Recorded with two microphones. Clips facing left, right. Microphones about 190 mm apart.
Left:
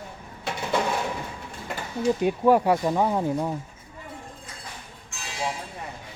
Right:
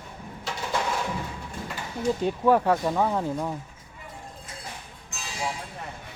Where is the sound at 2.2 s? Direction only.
10° left (ahead or behind).